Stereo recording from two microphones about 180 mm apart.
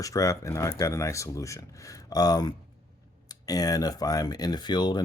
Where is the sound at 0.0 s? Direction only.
20° left (ahead or behind).